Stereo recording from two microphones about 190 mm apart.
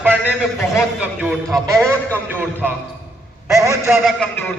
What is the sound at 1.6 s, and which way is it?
A man's voice, 15° right (ahead or behind).